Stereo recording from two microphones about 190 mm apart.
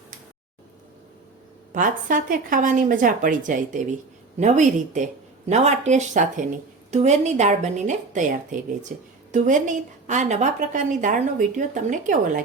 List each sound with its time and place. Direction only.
1.7 s a woman's voice: 45° right (ahead or behind)